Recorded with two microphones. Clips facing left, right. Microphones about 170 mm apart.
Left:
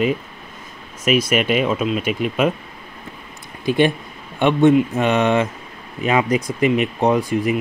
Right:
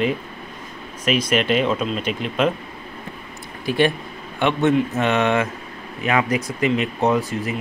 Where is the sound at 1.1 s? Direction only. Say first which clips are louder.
Left 2 dB; 10° left (ahead or behind).